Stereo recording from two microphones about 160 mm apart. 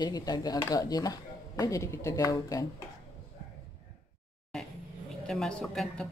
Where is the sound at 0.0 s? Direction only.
25° left (ahead or behind).